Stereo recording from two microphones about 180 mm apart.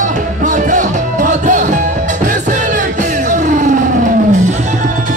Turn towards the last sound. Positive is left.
turn(degrees=-45)  # may be behind; listen again after turning